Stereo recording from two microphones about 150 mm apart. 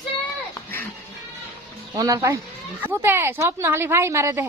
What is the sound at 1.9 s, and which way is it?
A woman's voice, 20° right (ahead or behind).